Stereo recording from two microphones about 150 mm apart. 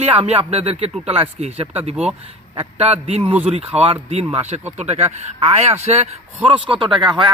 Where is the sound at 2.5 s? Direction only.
45° right (ahead or behind).